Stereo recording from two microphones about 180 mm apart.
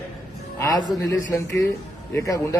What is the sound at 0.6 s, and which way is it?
Speech, 15° left (ahead or behind).